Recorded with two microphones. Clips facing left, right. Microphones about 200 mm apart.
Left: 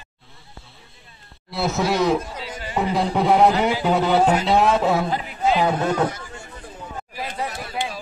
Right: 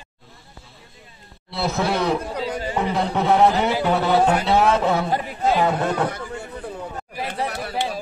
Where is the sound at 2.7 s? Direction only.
10° left (ahead or behind).